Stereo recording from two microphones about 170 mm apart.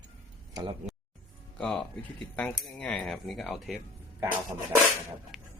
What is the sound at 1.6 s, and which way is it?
Speech, 5° left (ahead or behind).